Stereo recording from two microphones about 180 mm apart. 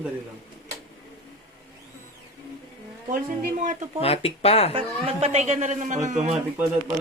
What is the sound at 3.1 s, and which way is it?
Speech, 45° right (ahead or behind).